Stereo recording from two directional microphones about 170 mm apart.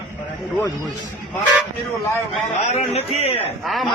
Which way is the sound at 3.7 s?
Centre (ahead or behind).